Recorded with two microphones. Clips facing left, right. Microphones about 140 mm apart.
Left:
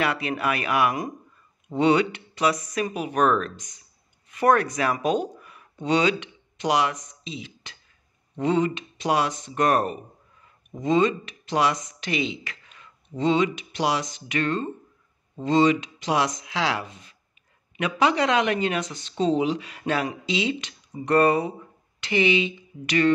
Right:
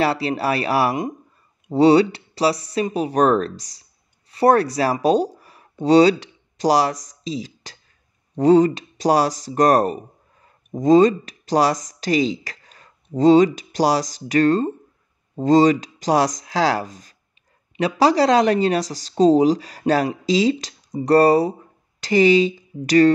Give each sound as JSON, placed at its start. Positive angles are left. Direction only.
{"t": 0.0, "sound": "speech", "side_deg": -35}